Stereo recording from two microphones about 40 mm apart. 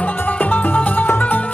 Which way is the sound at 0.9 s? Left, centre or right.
Left.